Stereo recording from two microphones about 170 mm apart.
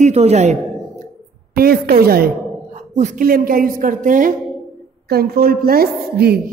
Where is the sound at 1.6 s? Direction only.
65° right (ahead or behind).